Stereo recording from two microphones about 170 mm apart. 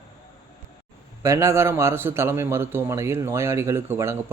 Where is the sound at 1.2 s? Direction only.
15° right (ahead or behind).